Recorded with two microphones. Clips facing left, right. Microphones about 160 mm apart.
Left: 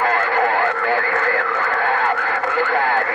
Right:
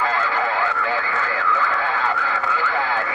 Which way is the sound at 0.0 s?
55° left (ahead or behind).